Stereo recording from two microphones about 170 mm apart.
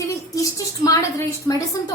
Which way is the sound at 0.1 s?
20° left (ahead or behind).